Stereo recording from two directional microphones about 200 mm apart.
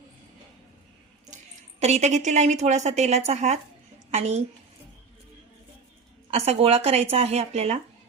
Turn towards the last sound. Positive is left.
turn(degrees=-30)  # may be behind; listen again after turning